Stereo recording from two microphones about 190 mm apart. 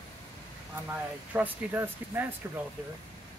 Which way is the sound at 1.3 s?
10° right (ahead or behind).